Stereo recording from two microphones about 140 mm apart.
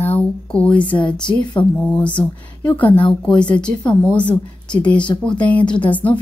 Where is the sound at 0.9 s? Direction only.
10° left (ahead or behind).